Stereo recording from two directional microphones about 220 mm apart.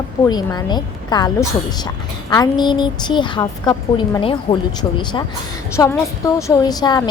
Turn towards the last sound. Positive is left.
turn(degrees=15)  # may be behind; listen again after turning